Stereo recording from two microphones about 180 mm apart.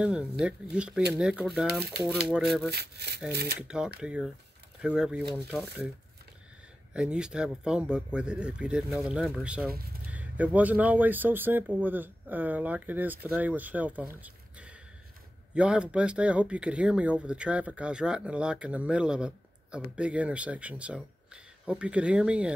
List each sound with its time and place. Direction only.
0.0 s speech: 5° right (ahead or behind)
2.7 s speech: 65° right (ahead or behind)
3.6 s speech: 5° right (ahead or behind)
6.9 s speech: 5° right (ahead or behind)